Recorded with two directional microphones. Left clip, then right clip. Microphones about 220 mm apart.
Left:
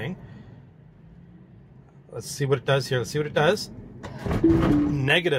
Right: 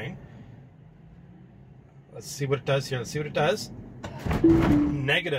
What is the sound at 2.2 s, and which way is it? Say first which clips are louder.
Speech: left 4 dB; 45° left (ahead or behind).